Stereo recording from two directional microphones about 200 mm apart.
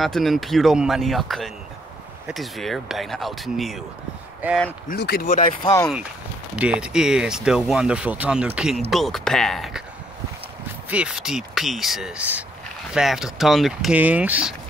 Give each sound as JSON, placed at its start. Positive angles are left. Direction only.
{"t": 0.0, "sound": "speech", "side_deg": 0}
{"t": 4.8, "sound": "speech", "side_deg": 50}
{"t": 5.4, "sound": "speech", "side_deg": 25}
{"t": 6.5, "sound": "speech", "side_deg": -5}
{"t": 10.9, "sound": "speech", "side_deg": -5}